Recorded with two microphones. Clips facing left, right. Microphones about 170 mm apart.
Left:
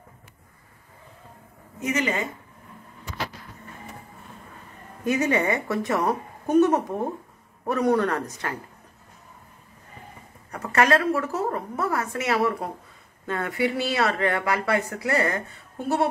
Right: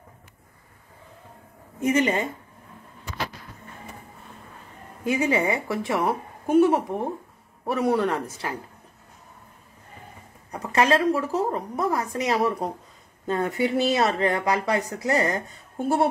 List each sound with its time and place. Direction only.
1.9 s speech: 30° right (ahead or behind)
5.0 s a woman's voice: 15° right (ahead or behind)
10.5 s a woman's voice: 15° right (ahead or behind)